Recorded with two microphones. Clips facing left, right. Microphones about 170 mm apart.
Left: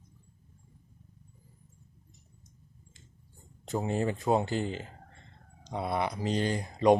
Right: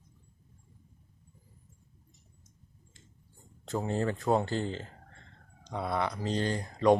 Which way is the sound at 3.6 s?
15° left (ahead or behind).